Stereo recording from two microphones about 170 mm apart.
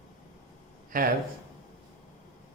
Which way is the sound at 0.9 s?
55° right (ahead or behind).